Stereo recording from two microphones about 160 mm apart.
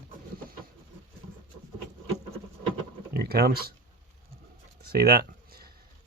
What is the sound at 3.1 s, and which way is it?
Speech, 75° right (ahead or behind).